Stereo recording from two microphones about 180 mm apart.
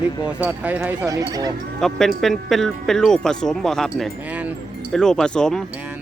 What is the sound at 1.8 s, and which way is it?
Speech, centre (ahead or behind).